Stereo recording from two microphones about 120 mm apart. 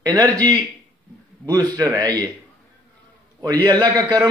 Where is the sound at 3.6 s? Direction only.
30° right (ahead or behind).